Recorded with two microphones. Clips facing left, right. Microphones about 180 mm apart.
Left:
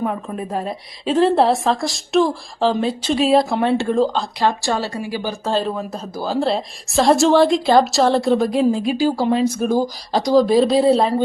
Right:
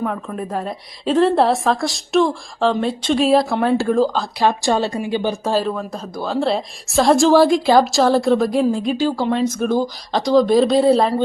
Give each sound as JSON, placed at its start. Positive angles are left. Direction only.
{"t": 0.0, "sound": "speech", "side_deg": 15}
{"t": 0.5, "sound": "a woman's voice", "side_deg": 0}
{"t": 4.4, "sound": "speech", "side_deg": -20}
{"t": 6.2, "sound": "a woman's voice", "side_deg": 0}